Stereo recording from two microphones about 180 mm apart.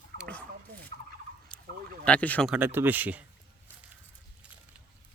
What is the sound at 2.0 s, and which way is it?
Speech, 10° left (ahead or behind).